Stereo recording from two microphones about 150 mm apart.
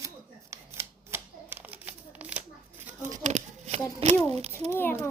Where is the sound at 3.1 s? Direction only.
55° right (ahead or behind).